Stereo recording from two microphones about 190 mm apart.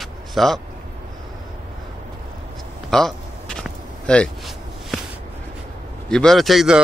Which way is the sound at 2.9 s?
Centre (ahead or behind).